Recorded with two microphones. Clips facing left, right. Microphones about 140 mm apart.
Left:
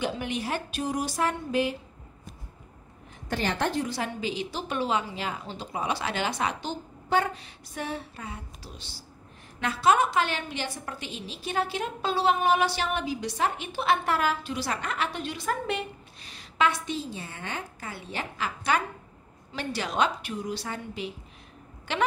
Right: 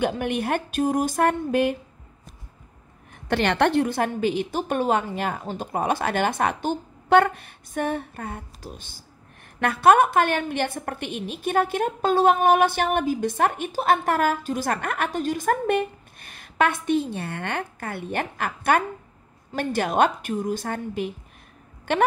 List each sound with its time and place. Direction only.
0.0 s a woman's voice: 55° right (ahead or behind)
3.3 s a woman's voice: 70° right (ahead or behind); by 22.0 s 50° right (ahead or behind)